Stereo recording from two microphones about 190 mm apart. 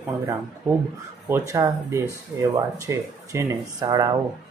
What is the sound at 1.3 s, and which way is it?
Speech, 15° right (ahead or behind).